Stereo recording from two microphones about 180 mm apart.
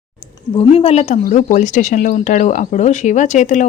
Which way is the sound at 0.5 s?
30° left (ahead or behind).